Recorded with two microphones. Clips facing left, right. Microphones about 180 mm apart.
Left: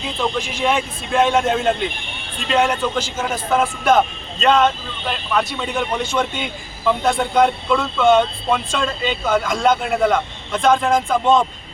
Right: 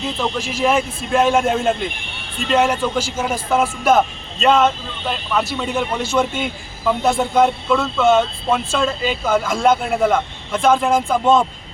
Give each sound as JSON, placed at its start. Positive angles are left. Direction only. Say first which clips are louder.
{"t": 0.2, "sound": "a man's voice", "louder": "even", "side_deg": -5}